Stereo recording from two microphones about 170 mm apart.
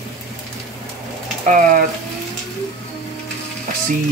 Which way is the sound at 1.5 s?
50° right (ahead or behind).